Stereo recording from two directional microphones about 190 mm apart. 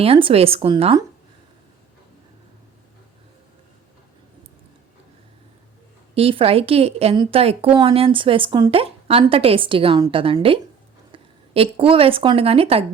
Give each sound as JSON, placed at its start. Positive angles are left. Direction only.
{"t": 0.0, "sound": "speech", "side_deg": -30}
{"t": 6.1, "sound": "speech", "side_deg": -30}